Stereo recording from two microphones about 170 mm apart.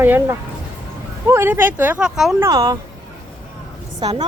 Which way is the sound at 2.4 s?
20° right (ahead or behind).